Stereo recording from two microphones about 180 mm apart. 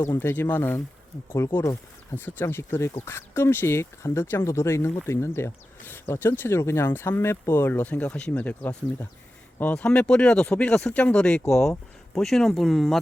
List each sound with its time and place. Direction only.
0.0 s speech: 15° left (ahead or behind)